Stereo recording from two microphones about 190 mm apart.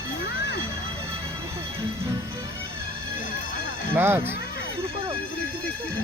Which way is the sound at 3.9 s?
10° right (ahead or behind).